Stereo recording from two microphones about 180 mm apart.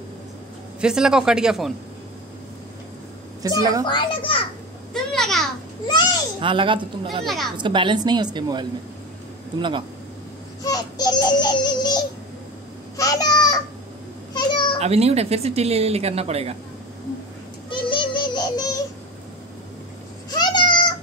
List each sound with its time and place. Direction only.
0.7 s a man's voice: 5° right (ahead or behind)
3.4 s a woman's voice: 20° right (ahead or behind)
3.8 s a child's voice: 25° left (ahead or behind)
4.9 s babbling: centre (ahead or behind)
6.4 s a woman's voice: 30° right (ahead or behind)
10.6 s music: 20° left (ahead or behind)
12.9 s a sound: 20° left (ahead or behind)
14.8 s a woman's voice: 35° right (ahead or behind)
17.6 s child singing: 25° left (ahead or behind)
20.2 s meow: 25° left (ahead or behind)